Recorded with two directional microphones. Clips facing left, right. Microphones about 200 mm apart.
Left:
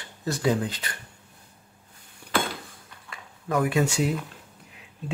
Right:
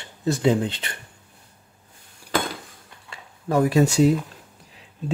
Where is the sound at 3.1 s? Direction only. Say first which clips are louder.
Right 4 dB; 30° right (ahead or behind).